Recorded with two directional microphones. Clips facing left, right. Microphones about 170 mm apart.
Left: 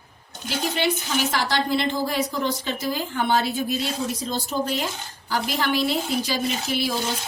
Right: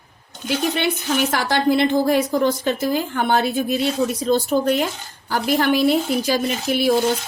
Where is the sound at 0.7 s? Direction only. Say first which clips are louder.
Right 3 dB; 55° right (ahead or behind).